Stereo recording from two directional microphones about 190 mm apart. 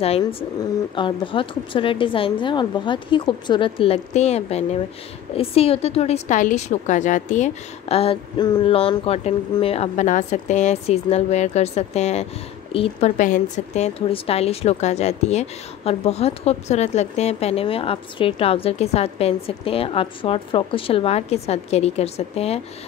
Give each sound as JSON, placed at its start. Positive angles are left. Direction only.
{"t": 0.2, "sound": "a woman's voice", "side_deg": 30}